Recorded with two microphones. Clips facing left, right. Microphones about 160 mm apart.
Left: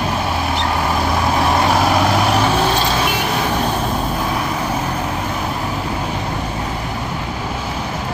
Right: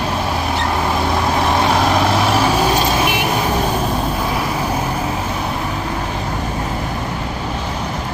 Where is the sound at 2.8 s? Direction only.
15° right (ahead or behind).